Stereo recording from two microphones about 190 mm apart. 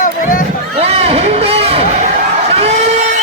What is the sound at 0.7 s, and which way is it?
Speech, 30° right (ahead or behind).